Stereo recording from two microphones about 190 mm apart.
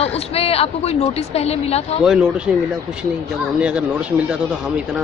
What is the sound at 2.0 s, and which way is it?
Speech, 5° right (ahead or behind).